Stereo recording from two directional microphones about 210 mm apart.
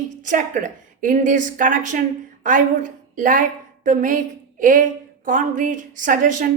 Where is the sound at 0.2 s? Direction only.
35° right (ahead or behind).